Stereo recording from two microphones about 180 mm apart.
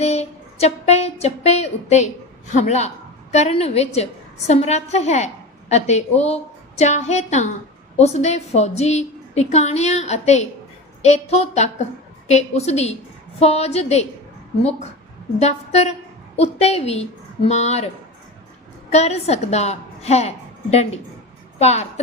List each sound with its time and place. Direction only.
0.0 s a sound: 35° left (ahead or behind)
2.5 s a woman's voice: 40° left (ahead or behind)
18.9 s a woman's voice: 35° left (ahead or behind)